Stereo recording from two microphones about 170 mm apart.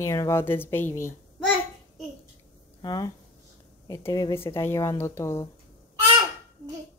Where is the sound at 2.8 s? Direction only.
25° left (ahead or behind).